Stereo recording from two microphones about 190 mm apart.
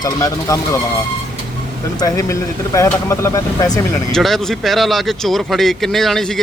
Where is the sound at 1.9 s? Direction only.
20° left (ahead or behind).